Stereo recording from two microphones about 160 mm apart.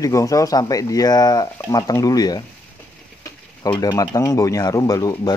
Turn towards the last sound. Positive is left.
turn(degrees=20)  # may be behind; listen again after turning